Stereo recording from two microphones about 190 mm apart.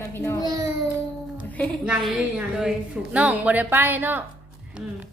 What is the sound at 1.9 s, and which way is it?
A woman's voice, 5° right (ahead or behind).